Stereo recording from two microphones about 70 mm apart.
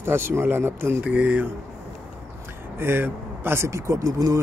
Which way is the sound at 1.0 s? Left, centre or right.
Right.